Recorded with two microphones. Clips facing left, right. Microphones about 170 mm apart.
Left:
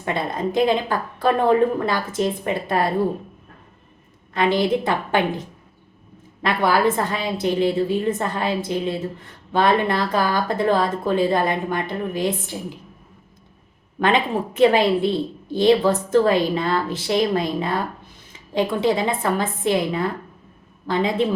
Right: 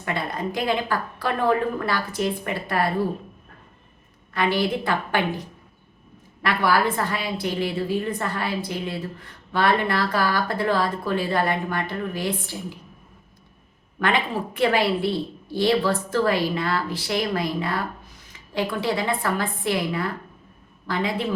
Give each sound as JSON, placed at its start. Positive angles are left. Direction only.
{"t": 0.0, "sound": "a woman's voice", "side_deg": 20}
{"t": 4.4, "sound": "a woman's voice", "side_deg": 20}
{"t": 6.4, "sound": "a woman's voice", "side_deg": 20}
{"t": 14.0, "sound": "a woman's voice", "side_deg": 20}